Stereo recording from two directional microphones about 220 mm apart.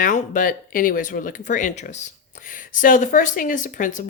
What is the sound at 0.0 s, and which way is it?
Speech, 35° left (ahead or behind).